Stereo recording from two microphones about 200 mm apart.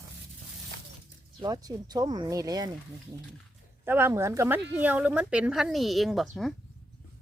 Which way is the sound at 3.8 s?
10° right (ahead or behind).